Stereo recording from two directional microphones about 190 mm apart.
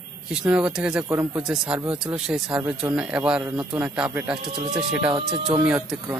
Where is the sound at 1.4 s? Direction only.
5° right (ahead or behind).